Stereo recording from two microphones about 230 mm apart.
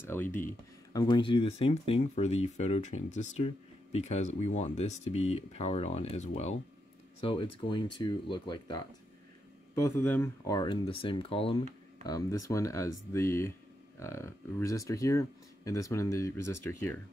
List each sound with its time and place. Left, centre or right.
0.0 s speech: centre
0.9 s speech: centre